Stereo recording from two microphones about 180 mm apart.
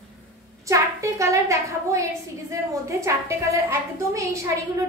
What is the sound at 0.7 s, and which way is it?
A woman's voice, 15° right (ahead or behind).